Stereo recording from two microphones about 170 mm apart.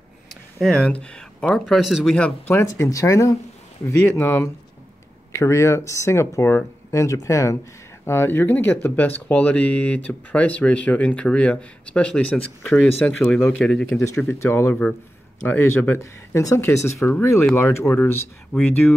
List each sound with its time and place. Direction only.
0.3 s speech: centre (ahead or behind)
14.0 s speech: 15° left (ahead or behind)